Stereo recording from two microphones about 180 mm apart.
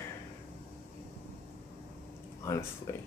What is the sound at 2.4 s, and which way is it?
Speech, 15° left (ahead or behind).